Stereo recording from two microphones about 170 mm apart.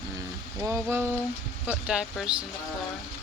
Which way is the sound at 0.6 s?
15° right (ahead or behind).